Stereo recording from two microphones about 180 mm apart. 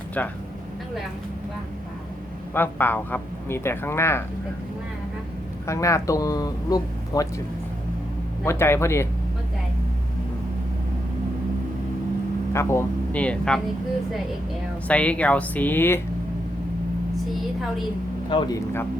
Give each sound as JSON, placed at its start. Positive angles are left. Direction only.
{"t": 0.2, "sound": "speech", "side_deg": 10}
{"t": 2.6, "sound": "speech", "side_deg": 10}
{"t": 5.6, "sound": "speech", "side_deg": 15}
{"t": 8.4, "sound": "speech", "side_deg": 15}
{"t": 12.5, "sound": "speech", "side_deg": 15}
{"t": 14.8, "sound": "speech", "side_deg": 5}
{"t": 18.3, "sound": "speech", "side_deg": 25}